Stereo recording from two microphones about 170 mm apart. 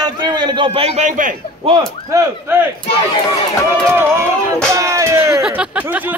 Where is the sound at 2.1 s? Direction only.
20° right (ahead or behind).